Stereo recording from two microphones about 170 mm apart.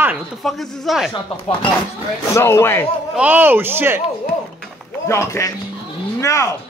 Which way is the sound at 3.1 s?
10° right (ahead or behind).